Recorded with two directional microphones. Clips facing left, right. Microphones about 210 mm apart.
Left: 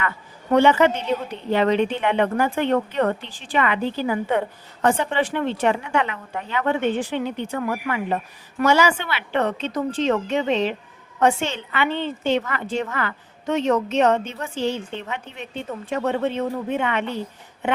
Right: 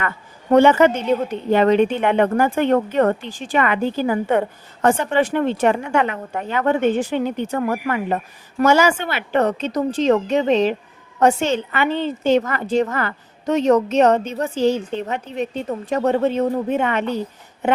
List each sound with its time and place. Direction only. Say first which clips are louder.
0.5 s a woman's voice: right 4 dB; 45° right (ahead or behind)